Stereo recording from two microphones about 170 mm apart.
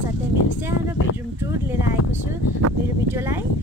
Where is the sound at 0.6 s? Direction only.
15° right (ahead or behind).